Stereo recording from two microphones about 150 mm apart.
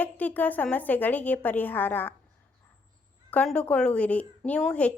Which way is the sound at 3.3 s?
10° left (ahead or behind).